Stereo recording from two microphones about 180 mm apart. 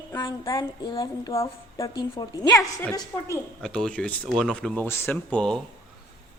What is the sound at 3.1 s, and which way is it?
Speech, 10° left (ahead or behind).